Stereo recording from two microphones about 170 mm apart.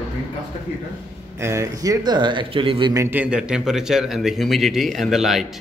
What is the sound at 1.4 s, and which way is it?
Speech, 15° right (ahead or behind).